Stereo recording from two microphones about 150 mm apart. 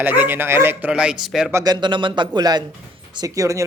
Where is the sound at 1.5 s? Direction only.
25° right (ahead or behind).